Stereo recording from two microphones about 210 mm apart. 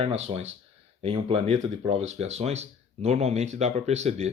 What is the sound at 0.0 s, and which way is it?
Speech, 30° right (ahead or behind).